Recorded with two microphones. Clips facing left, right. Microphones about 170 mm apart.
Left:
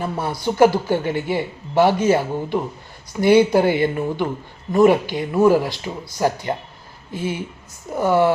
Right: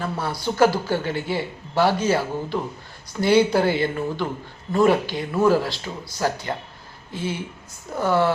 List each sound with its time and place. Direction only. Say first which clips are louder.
0.0 s a man's voice: left 3 dB; 20° left (ahead or behind)